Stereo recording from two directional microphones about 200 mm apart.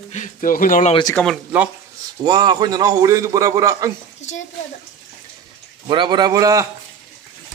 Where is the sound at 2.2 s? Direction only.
20° right (ahead or behind).